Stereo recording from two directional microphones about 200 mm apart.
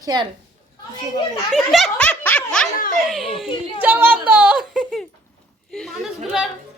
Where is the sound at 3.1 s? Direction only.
Centre (ahead or behind).